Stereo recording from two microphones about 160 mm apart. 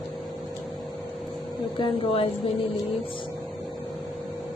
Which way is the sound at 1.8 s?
35° left (ahead or behind).